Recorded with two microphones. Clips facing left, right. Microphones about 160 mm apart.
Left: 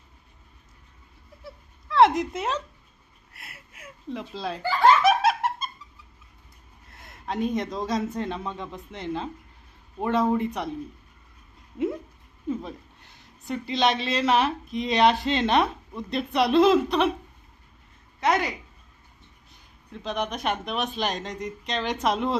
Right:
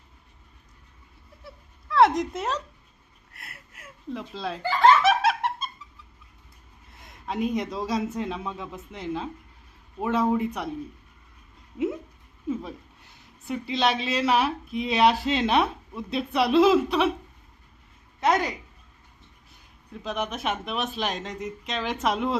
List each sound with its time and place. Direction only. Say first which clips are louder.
1.5 s speech: even; centre (ahead or behind)
3.3 s giggle: even; centre (ahead or behind)
6.9 s speech: even; centre (ahead or behind)
12.5 s speech: even; 5° right (ahead or behind)
18.3 s speech: even; 15° right (ahead or behind)
19.9 s speech: left 1 dB; 5° right (ahead or behind)